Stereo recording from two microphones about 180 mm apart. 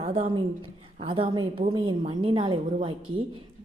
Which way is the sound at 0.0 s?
30° right (ahead or behind).